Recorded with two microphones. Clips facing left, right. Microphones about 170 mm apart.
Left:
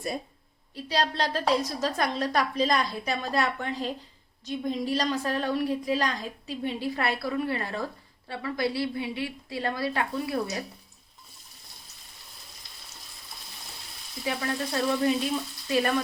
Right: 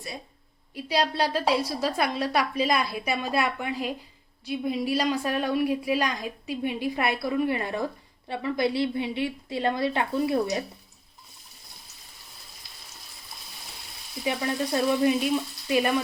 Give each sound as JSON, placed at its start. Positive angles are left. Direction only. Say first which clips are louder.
{"t": 0.7, "sound": "a woman's voice", "louder": "right 2 dB", "side_deg": -10}
{"t": 14.3, "sound": "a woman's voice", "louder": "right 3 dB", "side_deg": -20}